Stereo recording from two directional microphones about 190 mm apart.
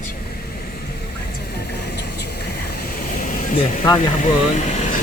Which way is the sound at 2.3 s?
55° left (ahead or behind).